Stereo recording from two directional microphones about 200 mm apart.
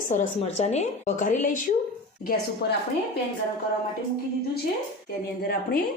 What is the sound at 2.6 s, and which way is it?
Speech, 55° left (ahead or behind).